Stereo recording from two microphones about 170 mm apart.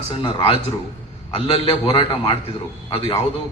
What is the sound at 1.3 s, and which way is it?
A man's voice, 30° left (ahead or behind).